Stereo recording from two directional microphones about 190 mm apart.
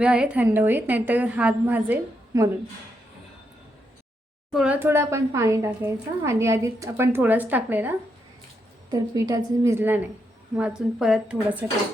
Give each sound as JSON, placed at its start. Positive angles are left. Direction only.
{"t": 0.0, "sound": "a woman's voice", "side_deg": -5}
{"t": 4.5, "sound": "a woman's voice", "side_deg": -5}